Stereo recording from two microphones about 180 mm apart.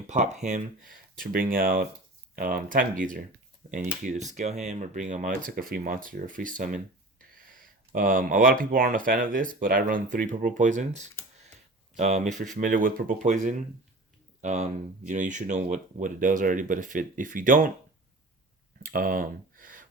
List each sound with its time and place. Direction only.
0.1 s speech: 40° right (ahead or behind)
18.8 s speech: 55° right (ahead or behind)